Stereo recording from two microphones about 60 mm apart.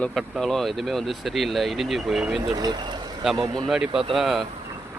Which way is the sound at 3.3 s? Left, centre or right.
Right.